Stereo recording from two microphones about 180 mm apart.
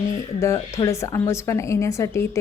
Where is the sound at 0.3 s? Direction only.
15° left (ahead or behind).